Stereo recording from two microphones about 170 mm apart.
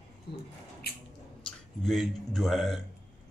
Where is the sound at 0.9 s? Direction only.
65° left (ahead or behind).